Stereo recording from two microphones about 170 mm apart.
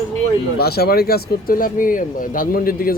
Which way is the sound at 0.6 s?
65° left (ahead or behind).